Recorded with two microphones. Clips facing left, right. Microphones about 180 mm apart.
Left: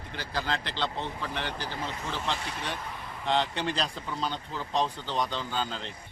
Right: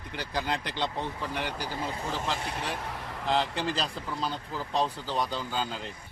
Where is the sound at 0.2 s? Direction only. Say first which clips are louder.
Right 1 dB; 15° right (ahead or behind).